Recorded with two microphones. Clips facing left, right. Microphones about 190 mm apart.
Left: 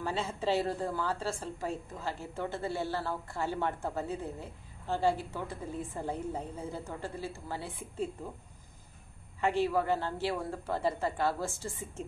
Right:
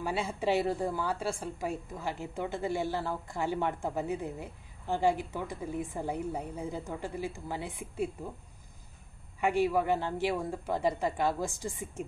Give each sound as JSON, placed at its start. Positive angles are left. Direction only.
{"t": 0.0, "sound": "a woman's voice", "side_deg": -10}
{"t": 9.4, "sound": "a woman's voice", "side_deg": -15}